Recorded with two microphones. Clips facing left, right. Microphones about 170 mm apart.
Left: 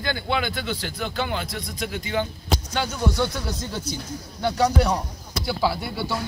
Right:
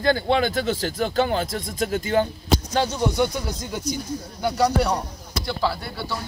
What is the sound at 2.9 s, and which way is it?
Speech, 15° right (ahead or behind).